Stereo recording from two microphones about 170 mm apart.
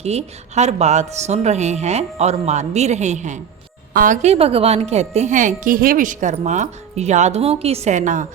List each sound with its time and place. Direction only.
0.0 s a woman's voice: 40° right (ahead or behind)